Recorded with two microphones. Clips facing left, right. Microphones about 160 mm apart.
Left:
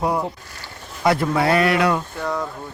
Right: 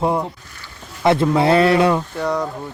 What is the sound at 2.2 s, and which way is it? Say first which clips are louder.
Speech: right 4 dB; centre (ahead or behind).